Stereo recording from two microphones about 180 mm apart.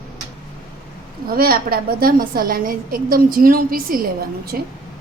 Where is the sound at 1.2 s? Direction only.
55° right (ahead or behind).